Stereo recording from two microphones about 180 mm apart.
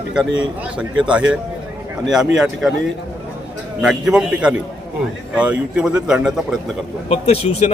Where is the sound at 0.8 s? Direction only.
5° right (ahead or behind).